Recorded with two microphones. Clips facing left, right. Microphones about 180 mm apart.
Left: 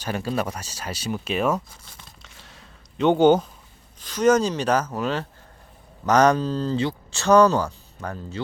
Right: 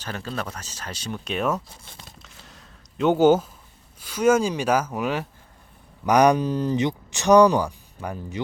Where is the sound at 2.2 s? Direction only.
Centre (ahead or behind).